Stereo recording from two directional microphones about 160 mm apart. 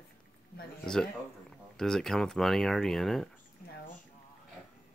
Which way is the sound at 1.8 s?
5° left (ahead or behind).